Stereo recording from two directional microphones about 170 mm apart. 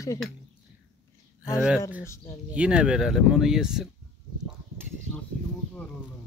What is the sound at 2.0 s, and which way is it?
Speech, 15° left (ahead or behind).